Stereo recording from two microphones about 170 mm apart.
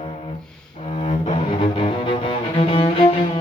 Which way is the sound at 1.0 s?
35° left (ahead or behind).